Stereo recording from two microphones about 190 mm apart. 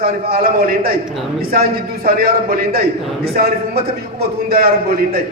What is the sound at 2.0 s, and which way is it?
Speech, 50° right (ahead or behind).